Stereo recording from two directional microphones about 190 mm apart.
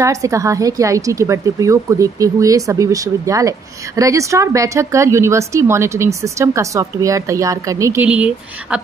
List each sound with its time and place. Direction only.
0.0 s a woman's voice: 15° right (ahead or behind)